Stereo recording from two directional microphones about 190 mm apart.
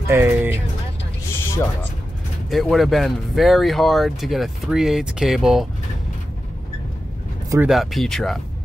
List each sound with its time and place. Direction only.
0.1 s speech: 10° right (ahead or behind)
1.3 s music: 15° left (ahead or behind)
2.5 s speech: centre (ahead or behind)
7.6 s speech: centre (ahead or behind)